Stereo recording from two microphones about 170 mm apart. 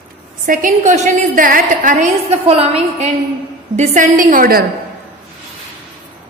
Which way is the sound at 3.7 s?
50° right (ahead or behind).